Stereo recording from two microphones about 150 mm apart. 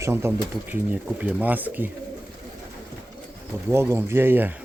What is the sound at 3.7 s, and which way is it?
Speech, 15° right (ahead or behind).